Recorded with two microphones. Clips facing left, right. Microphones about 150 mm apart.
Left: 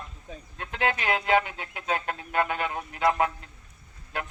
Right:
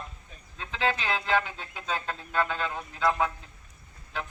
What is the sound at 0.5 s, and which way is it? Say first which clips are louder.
Speech: left 1 dB; 55° left (ahead or behind).